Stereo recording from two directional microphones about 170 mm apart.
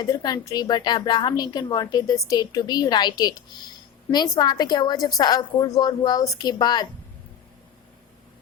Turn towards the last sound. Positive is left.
turn(degrees=25)  # may be behind; listen again after turning